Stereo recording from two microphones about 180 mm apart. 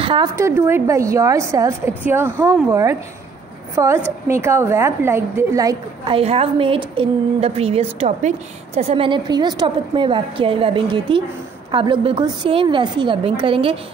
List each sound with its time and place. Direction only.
0.0 s a woman's voice: 30° right (ahead or behind)
0.4 s a woman's voice: 15° right (ahead or behind)
6.1 s a woman's voice: 30° right (ahead or behind)